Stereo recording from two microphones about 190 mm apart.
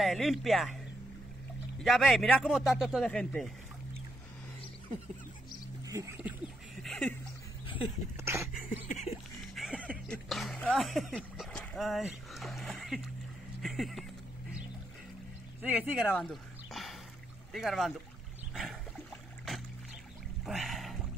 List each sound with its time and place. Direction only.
0.0 s speech: centre (ahead or behind)
1.8 s speech: centre (ahead or behind)
5.9 s speech: 15° right (ahead or behind)
6.7 s a sound: centre (ahead or behind)
8.2 s dog: 15° right (ahead or behind)
8.6 s a sound: 40° left (ahead or behind)
9.6 s music: centre (ahead or behind)
10.0 s speech: 5° left (ahead or behind)
15.6 s speech: 10° right (ahead or behind)
16.1 s a sound: centre (ahead or behind)
17.5 s speech: centre (ahead or behind)
18.5 s a sound: centre (ahead or behind)
20.4 s boat: centre (ahead or behind)